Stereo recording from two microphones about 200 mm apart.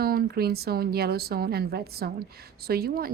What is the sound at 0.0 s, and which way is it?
A woman's voice, 50° right (ahead or behind).